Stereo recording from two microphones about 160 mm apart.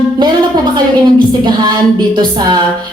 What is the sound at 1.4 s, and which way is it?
A woman's voice, 25° right (ahead or behind).